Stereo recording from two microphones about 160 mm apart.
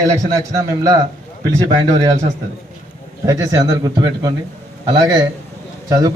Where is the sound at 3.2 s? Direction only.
20° right (ahead or behind).